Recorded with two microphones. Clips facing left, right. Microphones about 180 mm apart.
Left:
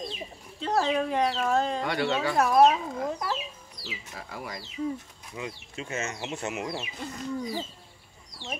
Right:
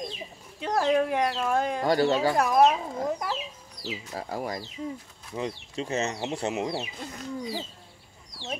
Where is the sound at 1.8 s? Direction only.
40° right (ahead or behind).